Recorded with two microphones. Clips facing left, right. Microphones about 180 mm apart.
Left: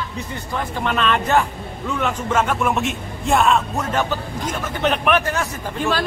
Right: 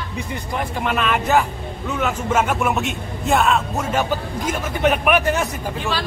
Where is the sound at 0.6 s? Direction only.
10° right (ahead or behind).